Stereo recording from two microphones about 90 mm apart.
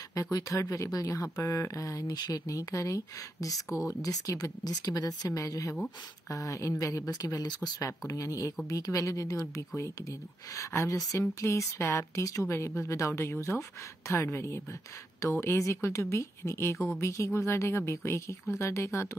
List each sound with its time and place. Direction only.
0.1 s speech: 40° left (ahead or behind)
3.6 s speech: 5° right (ahead or behind)
4.0 s a woman's voice: 40° left (ahead or behind)
16.7 s speech: 5° right (ahead or behind)
17.0 s speech: 30° left (ahead or behind)